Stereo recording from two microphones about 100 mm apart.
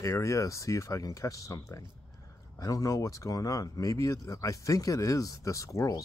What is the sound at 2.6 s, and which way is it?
Speech, 35° left (ahead or behind).